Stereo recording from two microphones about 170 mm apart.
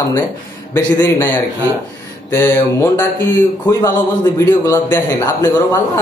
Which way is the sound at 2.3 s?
15° left (ahead or behind).